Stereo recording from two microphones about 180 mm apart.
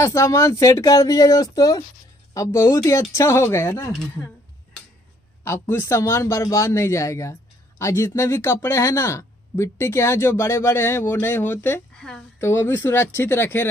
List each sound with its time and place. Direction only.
0.0 s speech: 15° left (ahead or behind)
5.4 s speech: 15° left (ahead or behind)